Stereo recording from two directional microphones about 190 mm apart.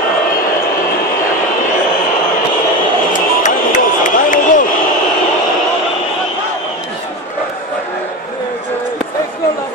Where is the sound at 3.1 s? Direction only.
40° left (ahead or behind).